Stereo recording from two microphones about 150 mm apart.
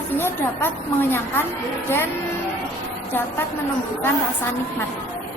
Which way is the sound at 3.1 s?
15° left (ahead or behind).